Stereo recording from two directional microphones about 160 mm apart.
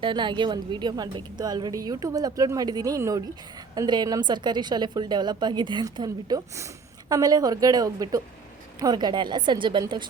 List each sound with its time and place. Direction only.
0.0 s a woman's voice: 30° right (ahead or behind)